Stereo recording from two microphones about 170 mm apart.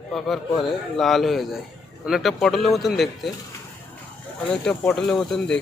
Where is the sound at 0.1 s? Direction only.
Centre (ahead or behind).